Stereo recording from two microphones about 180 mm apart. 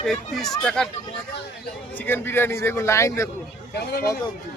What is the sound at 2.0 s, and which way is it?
Speech, 10° left (ahead or behind).